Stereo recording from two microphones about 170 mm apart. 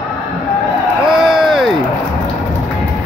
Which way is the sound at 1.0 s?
5° right (ahead or behind).